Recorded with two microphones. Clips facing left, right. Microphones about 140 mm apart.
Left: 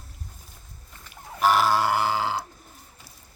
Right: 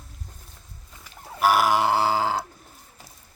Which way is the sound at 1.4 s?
10° right (ahead or behind).